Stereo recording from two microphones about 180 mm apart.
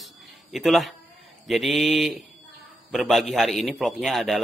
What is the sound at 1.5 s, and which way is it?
Speech, centre (ahead or behind).